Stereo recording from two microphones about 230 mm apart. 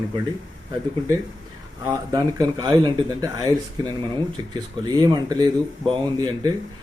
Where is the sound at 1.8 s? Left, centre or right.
Centre.